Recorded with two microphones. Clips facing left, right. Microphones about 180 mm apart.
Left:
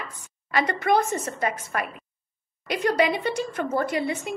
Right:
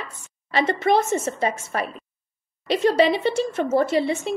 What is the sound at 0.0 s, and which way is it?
A woman's voice, 25° right (ahead or behind).